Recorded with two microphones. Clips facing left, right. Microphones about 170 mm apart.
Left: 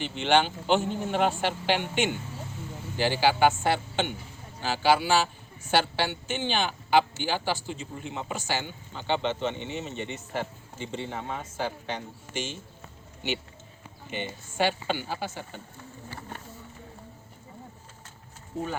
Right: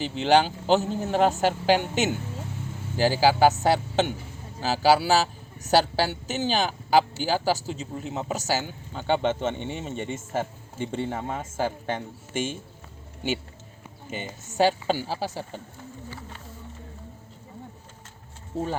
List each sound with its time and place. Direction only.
0.0 s a man's voice: 35° right (ahead or behind)
14.1 s a man's voice: 45° right (ahead or behind)
18.5 s a man's voice: 35° right (ahead or behind)